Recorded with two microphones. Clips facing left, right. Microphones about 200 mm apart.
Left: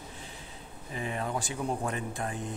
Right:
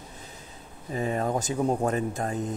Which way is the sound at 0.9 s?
40° right (ahead or behind).